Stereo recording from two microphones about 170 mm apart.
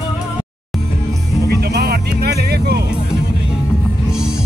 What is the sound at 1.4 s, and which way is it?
Music, 70° right (ahead or behind).